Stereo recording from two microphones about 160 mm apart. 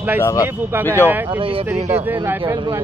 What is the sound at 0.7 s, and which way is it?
Speech, 10° right (ahead or behind).